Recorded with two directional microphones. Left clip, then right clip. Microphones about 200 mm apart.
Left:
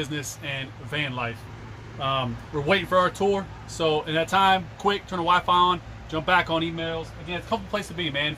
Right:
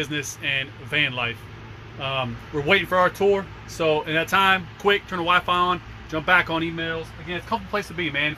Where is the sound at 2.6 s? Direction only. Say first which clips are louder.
Right 2 dB; 10° right (ahead or behind).